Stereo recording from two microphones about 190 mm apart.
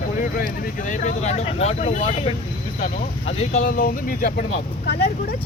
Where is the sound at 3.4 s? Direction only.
35° left (ahead or behind); by 5.1 s 55° left (ahead or behind).